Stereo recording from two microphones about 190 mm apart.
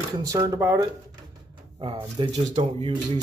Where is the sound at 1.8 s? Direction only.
25° right (ahead or behind).